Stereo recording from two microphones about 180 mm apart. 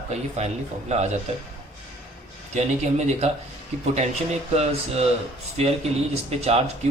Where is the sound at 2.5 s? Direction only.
40° right (ahead or behind).